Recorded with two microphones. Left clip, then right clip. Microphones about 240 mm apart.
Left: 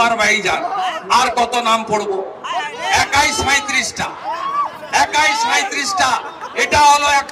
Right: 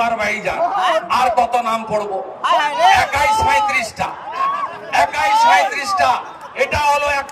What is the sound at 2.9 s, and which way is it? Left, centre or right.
Speech, left.